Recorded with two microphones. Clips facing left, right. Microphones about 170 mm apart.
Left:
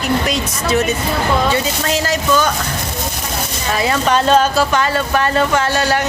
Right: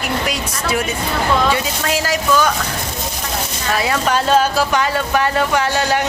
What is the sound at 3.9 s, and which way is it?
Speech, 5° right (ahead or behind).